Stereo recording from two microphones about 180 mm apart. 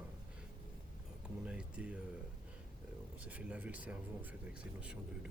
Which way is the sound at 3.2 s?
5° right (ahead or behind).